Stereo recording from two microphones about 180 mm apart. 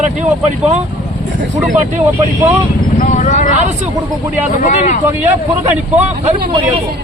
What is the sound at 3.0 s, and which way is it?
Vehicle, 40° left (ahead or behind).